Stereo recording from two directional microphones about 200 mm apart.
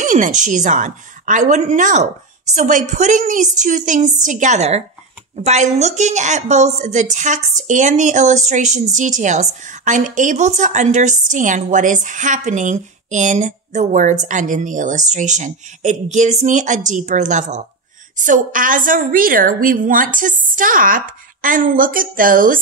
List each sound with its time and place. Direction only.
0.0 s a woman's voice: 40° right (ahead or behind)